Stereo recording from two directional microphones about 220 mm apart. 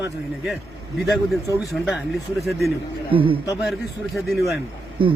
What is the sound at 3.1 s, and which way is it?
Speech, 25° right (ahead or behind).